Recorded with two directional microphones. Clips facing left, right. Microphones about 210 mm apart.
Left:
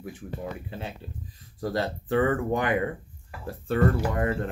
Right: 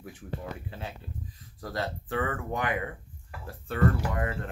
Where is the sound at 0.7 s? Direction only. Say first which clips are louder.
Left 3 dB; 25° left (ahead or behind).